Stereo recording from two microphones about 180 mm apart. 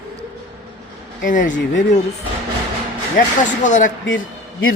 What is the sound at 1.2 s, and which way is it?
Speech, 45° left (ahead or behind).